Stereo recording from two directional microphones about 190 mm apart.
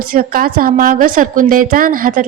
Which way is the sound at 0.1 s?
50° right (ahead or behind).